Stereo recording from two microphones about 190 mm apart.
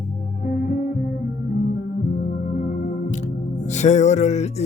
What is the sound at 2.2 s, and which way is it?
Music, 50° left (ahead or behind).